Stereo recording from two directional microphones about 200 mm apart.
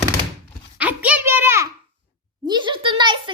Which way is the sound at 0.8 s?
5° right (ahead or behind).